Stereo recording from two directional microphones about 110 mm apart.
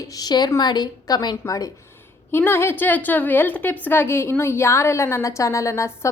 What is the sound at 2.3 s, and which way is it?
A woman's voice, 20° left (ahead or behind).